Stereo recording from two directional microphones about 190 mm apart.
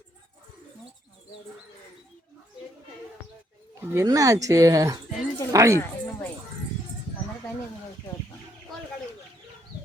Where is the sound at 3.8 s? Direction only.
15° right (ahead or behind).